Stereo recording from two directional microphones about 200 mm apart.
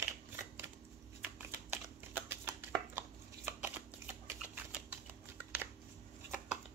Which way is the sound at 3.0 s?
10° right (ahead or behind).